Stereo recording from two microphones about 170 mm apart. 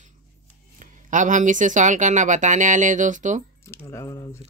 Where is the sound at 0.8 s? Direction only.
50° right (ahead or behind).